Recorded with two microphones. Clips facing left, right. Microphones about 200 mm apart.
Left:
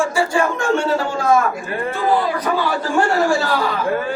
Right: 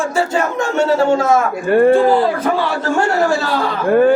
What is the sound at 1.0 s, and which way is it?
Speech, 25° right (ahead or behind).